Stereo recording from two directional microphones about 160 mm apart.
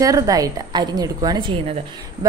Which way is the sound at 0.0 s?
20° right (ahead or behind).